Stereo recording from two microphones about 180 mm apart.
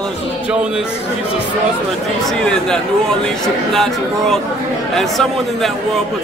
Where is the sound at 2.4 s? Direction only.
5° left (ahead or behind).